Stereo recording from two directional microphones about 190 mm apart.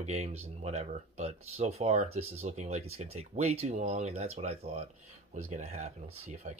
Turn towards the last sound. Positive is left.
turn(degrees=-35)  # may be behind; listen again after turning